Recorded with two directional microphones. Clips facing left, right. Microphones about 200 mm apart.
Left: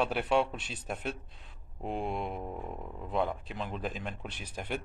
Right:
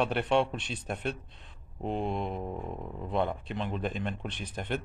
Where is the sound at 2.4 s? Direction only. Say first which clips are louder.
Right 3 dB; 5° right (ahead or behind).